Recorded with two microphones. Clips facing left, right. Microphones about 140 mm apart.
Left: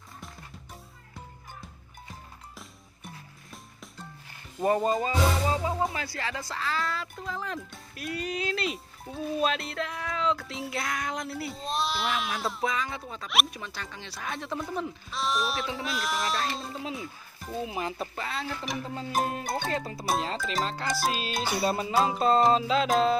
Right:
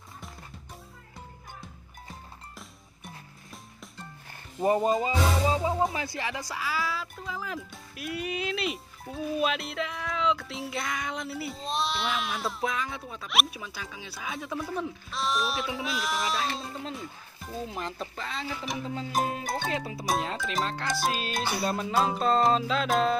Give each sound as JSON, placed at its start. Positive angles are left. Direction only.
{"t": 4.6, "sound": "speech", "side_deg": -20}